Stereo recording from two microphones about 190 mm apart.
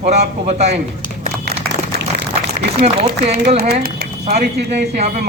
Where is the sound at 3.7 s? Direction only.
55° right (ahead or behind).